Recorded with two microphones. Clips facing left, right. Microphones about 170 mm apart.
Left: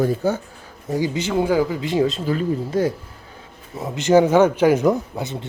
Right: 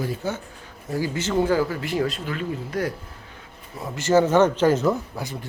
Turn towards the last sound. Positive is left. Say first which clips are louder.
# left 4 dB
turn(degrees=20)  # may be behind; listen again after turning